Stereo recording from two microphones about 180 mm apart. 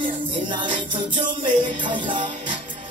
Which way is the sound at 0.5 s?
25° right (ahead or behind).